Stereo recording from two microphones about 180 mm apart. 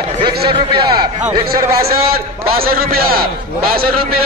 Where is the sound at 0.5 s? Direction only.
25° right (ahead or behind).